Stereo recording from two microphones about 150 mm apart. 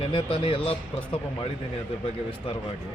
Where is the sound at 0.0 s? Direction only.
35° left (ahead or behind).